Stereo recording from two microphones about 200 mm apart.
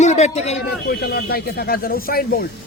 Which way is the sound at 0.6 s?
55° left (ahead or behind).